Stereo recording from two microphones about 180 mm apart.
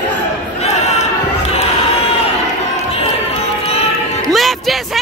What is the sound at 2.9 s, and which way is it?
Run, 35° left (ahead or behind).